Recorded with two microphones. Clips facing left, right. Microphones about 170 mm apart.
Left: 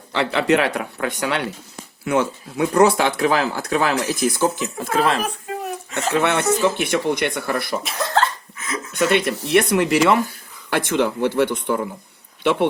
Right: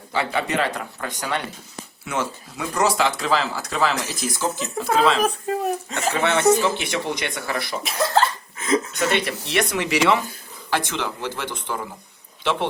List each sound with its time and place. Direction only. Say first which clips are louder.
0.1 s speech: left 6 dB; 70° left (ahead or behind); by 7.8 s 55° left (ahead or behind)
7.9 s speech: right 4 dB; centre (ahead or behind)
8.5 s a sound: right 8 dB; 30° right (ahead or behind)
8.9 s speech: left 4 dB; 50° left (ahead or behind)